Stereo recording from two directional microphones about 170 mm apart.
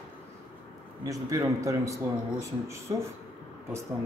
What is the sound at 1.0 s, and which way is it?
A man's voice, 20° right (ahead or behind).